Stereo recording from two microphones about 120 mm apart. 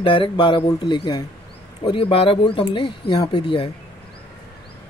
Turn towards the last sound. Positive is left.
turn(degrees=45)  # may be behind; listen again after turning